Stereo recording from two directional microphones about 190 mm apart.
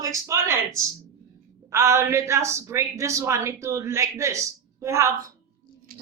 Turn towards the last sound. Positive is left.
turn(degrees=-15)  # may be behind; listen again after turning